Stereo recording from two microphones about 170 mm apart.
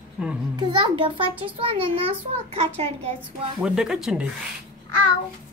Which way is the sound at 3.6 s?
5° right (ahead or behind).